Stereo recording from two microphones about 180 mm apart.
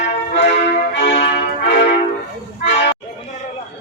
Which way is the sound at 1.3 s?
70° left (ahead or behind).